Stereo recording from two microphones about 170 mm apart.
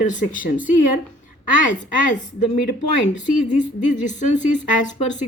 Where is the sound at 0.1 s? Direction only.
50° left (ahead or behind).